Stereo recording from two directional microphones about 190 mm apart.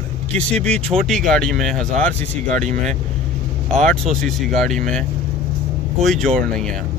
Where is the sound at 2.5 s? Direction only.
40° right (ahead or behind).